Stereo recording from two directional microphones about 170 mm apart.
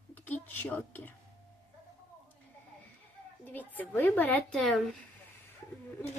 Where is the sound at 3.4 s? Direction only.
10° left (ahead or behind).